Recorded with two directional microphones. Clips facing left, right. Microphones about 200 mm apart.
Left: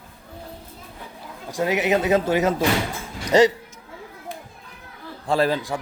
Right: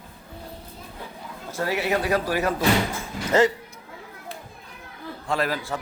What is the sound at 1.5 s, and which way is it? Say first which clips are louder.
Speech: left 4 dB; 15° left (ahead or behind).